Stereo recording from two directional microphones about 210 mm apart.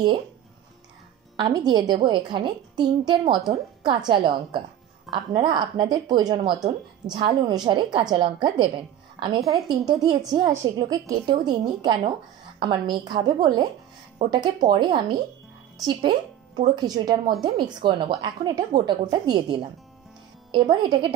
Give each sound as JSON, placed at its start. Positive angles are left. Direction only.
{"t": 1.4, "sound": "a woman's voice", "side_deg": -20}